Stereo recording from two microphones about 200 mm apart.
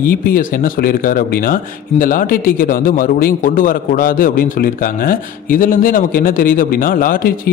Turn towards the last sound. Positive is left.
turn(degrees=45)  # may be behind; listen again after turning